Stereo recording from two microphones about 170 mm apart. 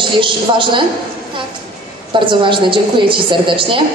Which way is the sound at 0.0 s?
30° right (ahead or behind).